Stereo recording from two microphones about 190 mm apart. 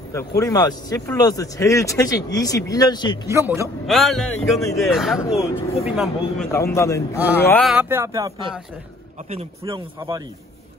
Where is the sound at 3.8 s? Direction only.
Centre (ahead or behind).